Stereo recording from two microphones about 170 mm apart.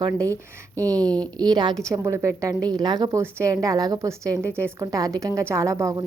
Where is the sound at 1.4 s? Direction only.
25° right (ahead or behind).